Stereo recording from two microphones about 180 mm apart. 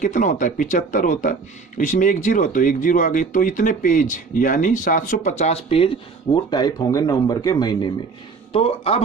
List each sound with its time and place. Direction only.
0.0 s speech: 45° left (ahead or behind); by 7.9 s 20° left (ahead or behind)
8.5 s speech: 30° left (ahead or behind)